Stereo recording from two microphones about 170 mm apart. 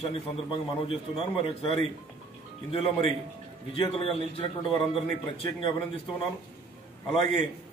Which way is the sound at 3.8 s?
30° left (ahead or behind).